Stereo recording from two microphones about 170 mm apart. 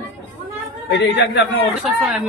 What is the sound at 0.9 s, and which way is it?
Speech, 90° left.